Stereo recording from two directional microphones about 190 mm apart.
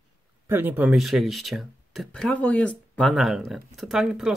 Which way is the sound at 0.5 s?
10° right (ahead or behind).